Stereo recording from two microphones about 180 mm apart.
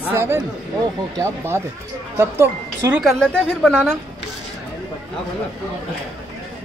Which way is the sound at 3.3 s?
5° left (ahead or behind).